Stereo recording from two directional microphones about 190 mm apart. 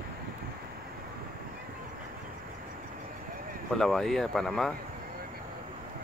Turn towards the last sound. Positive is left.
turn(degrees=0)  # may be behind; listen again after turning